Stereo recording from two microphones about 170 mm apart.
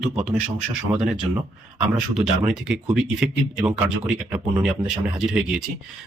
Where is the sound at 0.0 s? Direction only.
5° right (ahead or behind).